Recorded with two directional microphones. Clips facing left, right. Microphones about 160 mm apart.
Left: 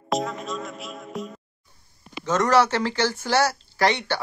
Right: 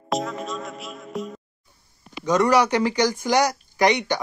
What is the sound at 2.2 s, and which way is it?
Speech, 15° right (ahead or behind).